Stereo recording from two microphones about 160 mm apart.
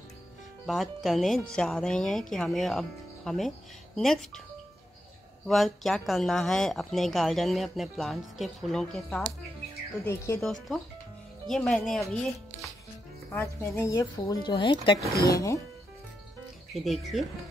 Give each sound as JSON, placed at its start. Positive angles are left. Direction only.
{"t": 0.7, "sound": "speech", "side_deg": 0}
{"t": 5.5, "sound": "speech", "side_deg": 0}
{"t": 10.0, "sound": "speech", "side_deg": 15}
{"t": 10.4, "sound": "speech", "side_deg": 0}
{"t": 13.3, "sound": "speech", "side_deg": 15}
{"t": 15.2, "sound": "speech", "side_deg": 20}
{"t": 16.7, "sound": "speech", "side_deg": 0}